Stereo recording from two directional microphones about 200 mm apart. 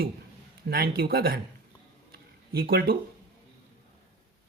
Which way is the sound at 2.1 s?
50° right (ahead or behind).